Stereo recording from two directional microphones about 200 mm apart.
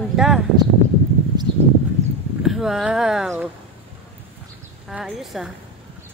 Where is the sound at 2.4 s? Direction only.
Centre (ahead or behind).